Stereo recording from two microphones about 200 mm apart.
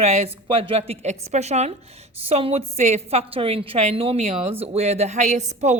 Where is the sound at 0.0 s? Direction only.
30° right (ahead or behind).